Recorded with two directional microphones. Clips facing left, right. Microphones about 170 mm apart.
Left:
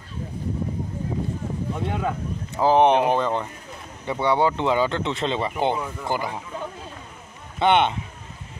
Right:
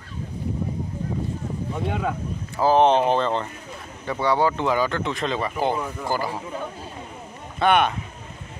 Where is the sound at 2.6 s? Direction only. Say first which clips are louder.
Even; 15° left (ahead or behind).